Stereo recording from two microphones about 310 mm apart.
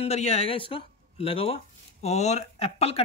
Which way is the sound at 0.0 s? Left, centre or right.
Left.